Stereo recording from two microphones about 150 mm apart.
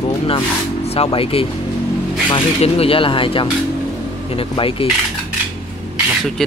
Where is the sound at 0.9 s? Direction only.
40° left (ahead or behind).